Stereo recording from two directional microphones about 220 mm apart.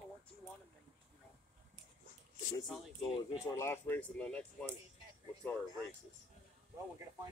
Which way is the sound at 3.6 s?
10° left (ahead or behind).